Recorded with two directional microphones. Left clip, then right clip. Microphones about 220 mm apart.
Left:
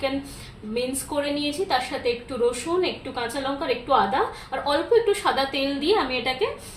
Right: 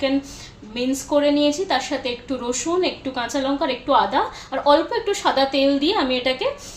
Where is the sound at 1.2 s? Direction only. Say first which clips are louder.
Right 5 dB; 45° right (ahead or behind).